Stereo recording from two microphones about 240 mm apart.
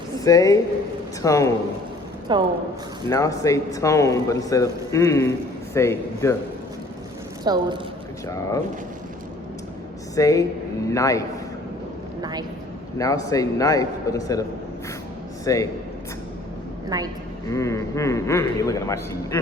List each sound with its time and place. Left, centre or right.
0.3 s a man's voice: centre
2.3 s a woman's voice: centre
3.1 s a man's voice: centre
7.4 s a woman's voice: centre
8.3 s a man's voice: centre
10.2 s a man's voice: centre
12.2 s a sound: centre
13.0 s a man's voice: centre
15.5 s a man's voice: centre
16.9 s a woman's voice: centre
17.5 s a man's voice: centre